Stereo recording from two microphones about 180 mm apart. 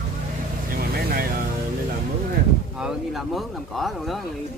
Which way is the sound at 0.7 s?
55° right (ahead or behind).